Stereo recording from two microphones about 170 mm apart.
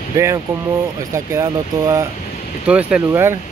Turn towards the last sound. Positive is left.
turn(degrees=-15)  # may be behind; listen again after turning